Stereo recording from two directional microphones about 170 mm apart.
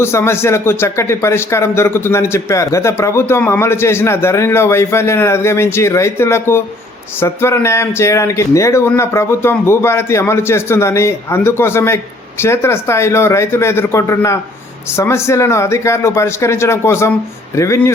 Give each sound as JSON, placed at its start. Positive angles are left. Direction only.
{"t": 0.0, "sound": "a man's voice", "side_deg": 15}